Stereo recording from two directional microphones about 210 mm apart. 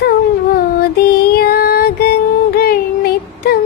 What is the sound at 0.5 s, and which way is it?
Music, 45° left (ahead or behind).